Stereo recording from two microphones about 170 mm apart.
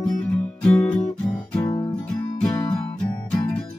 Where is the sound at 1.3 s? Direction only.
10° left (ahead or behind).